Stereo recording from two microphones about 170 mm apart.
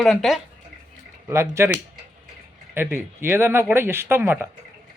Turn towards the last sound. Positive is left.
turn(degrees=-15)  # may be behind; listen again after turning